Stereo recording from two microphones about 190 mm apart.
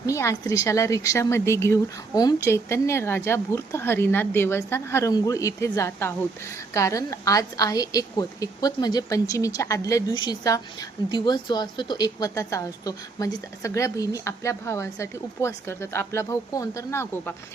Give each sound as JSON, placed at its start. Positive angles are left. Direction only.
{"t": 0.0, "sound": "a woman's voice", "side_deg": 15}